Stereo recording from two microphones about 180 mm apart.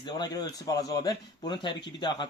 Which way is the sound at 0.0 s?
25° left (ahead or behind).